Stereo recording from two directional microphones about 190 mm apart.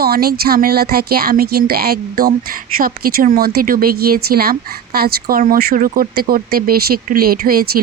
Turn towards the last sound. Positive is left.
turn(degrees=-50)  # may be behind; listen again after turning